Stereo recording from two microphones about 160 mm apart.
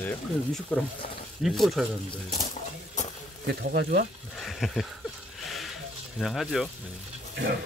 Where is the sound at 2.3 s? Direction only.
50° left (ahead or behind).